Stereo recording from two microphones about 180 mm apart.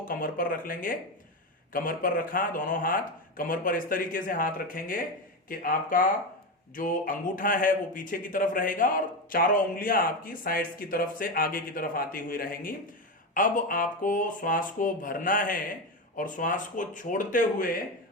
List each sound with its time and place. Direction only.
0.0 s a man's voice: 50° left (ahead or behind)